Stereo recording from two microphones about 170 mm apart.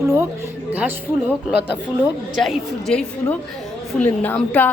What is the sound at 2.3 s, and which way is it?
A woman's voice, centre (ahead or behind).